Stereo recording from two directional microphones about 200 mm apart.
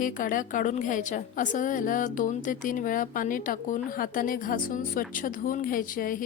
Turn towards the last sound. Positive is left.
turn(degrees=45)  # may be behind; listen again after turning